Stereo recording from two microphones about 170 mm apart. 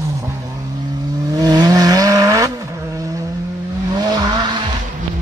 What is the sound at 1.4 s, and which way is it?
Vehicle, 20° right (ahead or behind).